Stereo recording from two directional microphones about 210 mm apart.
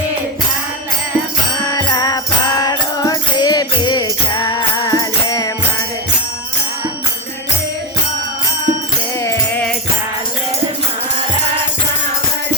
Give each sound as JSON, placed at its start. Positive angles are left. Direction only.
{"t": 1.7, "sound": "music", "side_deg": 20}
{"t": 9.2, "sound": "music", "side_deg": 5}